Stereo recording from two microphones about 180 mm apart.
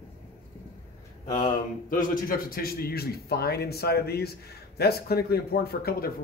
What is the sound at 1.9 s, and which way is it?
A man's voice, 50° left (ahead or behind).